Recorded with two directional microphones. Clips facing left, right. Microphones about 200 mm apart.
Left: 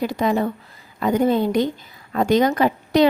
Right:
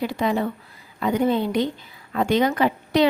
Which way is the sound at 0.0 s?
45° left (ahead or behind).